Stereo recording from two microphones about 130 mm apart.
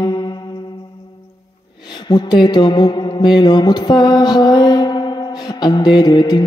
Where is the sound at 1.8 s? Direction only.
35° left (ahead or behind).